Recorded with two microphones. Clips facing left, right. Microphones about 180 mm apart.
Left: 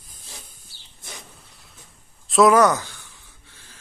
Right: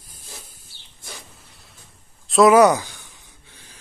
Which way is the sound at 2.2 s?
Centre (ahead or behind).